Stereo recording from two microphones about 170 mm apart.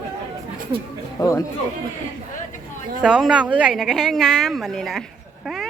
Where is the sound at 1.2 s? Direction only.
20° left (ahead or behind).